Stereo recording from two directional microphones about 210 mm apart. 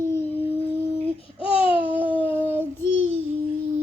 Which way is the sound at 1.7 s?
5° right (ahead or behind).